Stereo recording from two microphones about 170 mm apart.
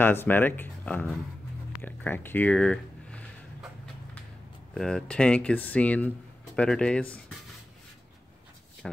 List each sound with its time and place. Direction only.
0.0 s speech: 10° left (ahead or behind)
4.7 s speech: 5° left (ahead or behind)
8.8 s speech: centre (ahead or behind)